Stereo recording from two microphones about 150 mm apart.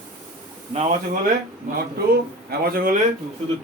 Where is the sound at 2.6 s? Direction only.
80° right.